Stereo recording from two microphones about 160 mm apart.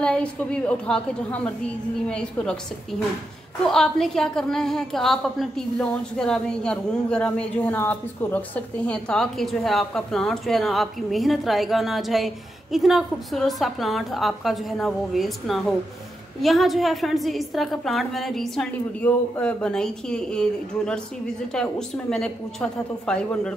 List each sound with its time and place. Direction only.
0.0 s a woman's voice: 5° left (ahead or behind)